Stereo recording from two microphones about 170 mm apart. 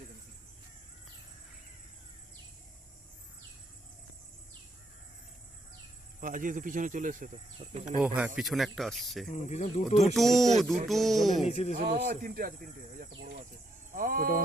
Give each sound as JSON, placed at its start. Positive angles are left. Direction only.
{"t": 6.1, "sound": "speech", "side_deg": -50}
{"t": 8.0, "sound": "speech", "side_deg": -10}
{"t": 9.3, "sound": "speech", "side_deg": 40}
{"t": 10.2, "sound": "speech", "side_deg": 0}
{"t": 11.4, "sound": "speech", "side_deg": 40}
{"t": 11.7, "sound": "speech", "side_deg": -50}